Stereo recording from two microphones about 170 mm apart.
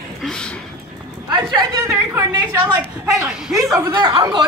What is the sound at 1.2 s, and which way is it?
Speech, 25° right (ahead or behind).